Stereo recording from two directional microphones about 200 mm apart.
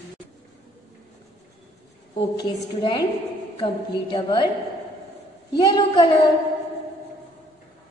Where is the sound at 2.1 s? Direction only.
25° left (ahead or behind).